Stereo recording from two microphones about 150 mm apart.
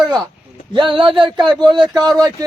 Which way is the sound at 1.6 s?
30° right (ahead or behind).